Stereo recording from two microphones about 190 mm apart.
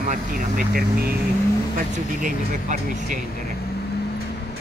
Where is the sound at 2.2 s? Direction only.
45° right (ahead or behind).